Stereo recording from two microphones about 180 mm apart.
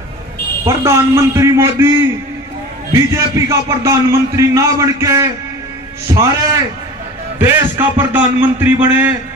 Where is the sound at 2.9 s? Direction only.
15° right (ahead or behind).